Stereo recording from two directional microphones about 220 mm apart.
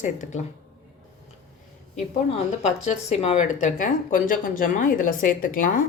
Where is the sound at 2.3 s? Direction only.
30° left (ahead or behind).